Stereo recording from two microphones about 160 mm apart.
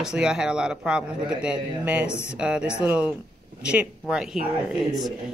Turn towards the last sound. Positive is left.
turn(degrees=0)  # may be behind; listen again after turning